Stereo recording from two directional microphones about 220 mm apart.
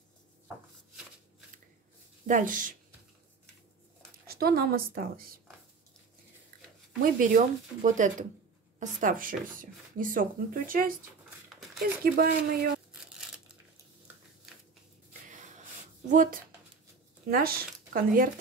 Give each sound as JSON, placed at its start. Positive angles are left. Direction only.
{"t": 2.2, "sound": "speech", "side_deg": -35}
{"t": 4.3, "sound": "a woman's voice", "side_deg": -45}
{"t": 7.0, "sound": "speech", "side_deg": -35}
{"t": 11.2, "sound": "a sound", "side_deg": 0}
{"t": 12.0, "sound": "speech", "side_deg": -40}
{"t": 15.2, "sound": "a sound", "side_deg": -35}
{"t": 16.1, "sound": "speech", "side_deg": -35}